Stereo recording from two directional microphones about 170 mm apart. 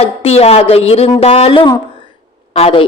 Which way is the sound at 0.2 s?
35° left (ahead or behind).